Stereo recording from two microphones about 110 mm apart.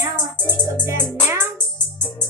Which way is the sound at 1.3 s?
20° right (ahead or behind).